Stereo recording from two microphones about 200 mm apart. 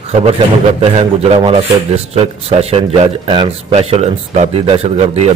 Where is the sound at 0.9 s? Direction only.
30° right (ahead or behind).